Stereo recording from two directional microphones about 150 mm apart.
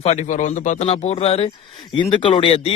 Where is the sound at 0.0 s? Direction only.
50° left (ahead or behind).